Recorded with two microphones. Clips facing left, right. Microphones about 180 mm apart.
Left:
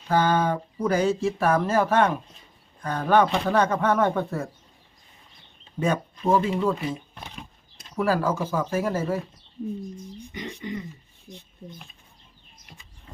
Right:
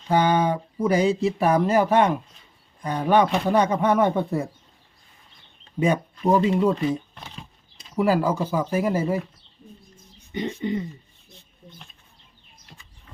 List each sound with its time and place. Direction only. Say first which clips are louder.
0.1 s speech: right 2 dB; 15° right (ahead or behind)
5.8 s speech: right 3 dB; 15° right (ahead or behind)
7.3 s a sound: left 1 dB; centre (ahead or behind)
7.9 s speech: right 3 dB; 15° right (ahead or behind)
10.3 s speech: right 8 dB; 30° right (ahead or behind)
11.3 s speech: left 9 dB; 90° left